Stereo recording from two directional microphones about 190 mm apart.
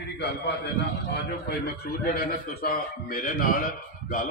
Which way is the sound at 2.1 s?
55° left (ahead or behind).